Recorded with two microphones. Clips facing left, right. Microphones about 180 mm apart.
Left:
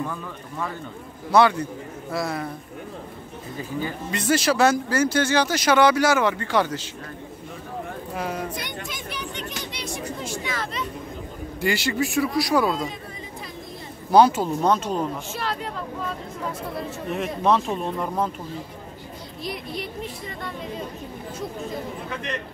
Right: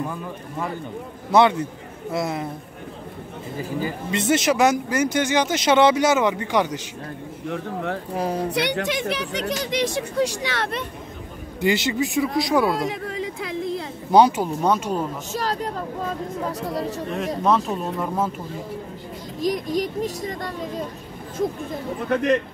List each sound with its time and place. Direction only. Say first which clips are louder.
0.0 s speech: right 2 dB; 15° right (ahead or behind)
4.1 s speech: right 2 dB; 25° right (ahead or behind)
7.4 s speech: right 8 dB; 80° right
8.2 s speech: right 4 dB; 35° right (ahead or behind)
8.5 s speech: right 10 dB; 75° right (ahead or behind)
11.6 s speech: right 3 dB; 20° right (ahead or behind)
12.7 s a sound: right 5 dB; 80° right
14.1 s speech: even; 15° right (ahead or behind)
15.3 s speech: right 4 dB; 40° right (ahead or behind)
17.4 s speech: even; centre (ahead or behind)
19.4 s speech: right 9 dB; 40° right (ahead or behind)